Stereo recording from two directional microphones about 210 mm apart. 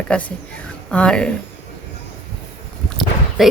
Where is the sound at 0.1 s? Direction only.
5° left (ahead or behind).